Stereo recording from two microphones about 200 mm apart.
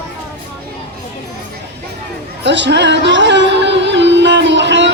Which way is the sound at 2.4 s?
60° right (ahead or behind).